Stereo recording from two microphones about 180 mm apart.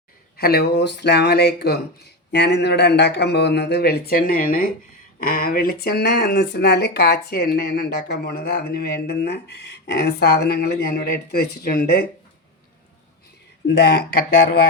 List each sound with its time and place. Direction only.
0.3 s speech: 60° left (ahead or behind)
13.7 s speech: 65° left (ahead or behind)